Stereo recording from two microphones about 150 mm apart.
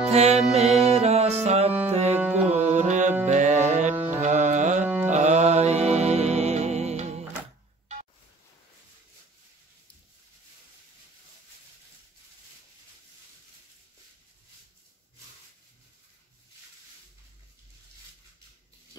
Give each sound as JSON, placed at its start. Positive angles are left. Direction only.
{"t": 0.1, "sound": "music", "side_deg": -45}
{"t": 2.1, "sound": "music", "side_deg": -10}
{"t": 2.5, "sound": "music", "side_deg": -50}